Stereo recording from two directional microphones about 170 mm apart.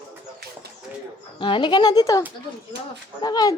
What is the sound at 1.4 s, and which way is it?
Speech, 30° left (ahead or behind).